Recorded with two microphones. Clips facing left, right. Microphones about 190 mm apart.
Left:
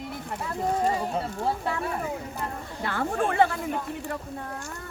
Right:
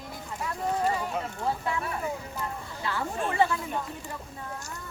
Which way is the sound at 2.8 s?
55° left (ahead or behind).